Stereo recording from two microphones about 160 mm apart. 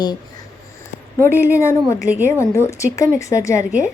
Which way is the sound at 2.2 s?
15° left (ahead or behind).